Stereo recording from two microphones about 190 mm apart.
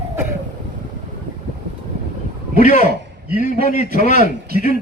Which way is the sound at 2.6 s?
40° left (ahead or behind).